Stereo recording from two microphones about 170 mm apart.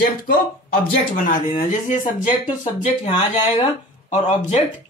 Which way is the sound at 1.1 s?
50° left (ahead or behind).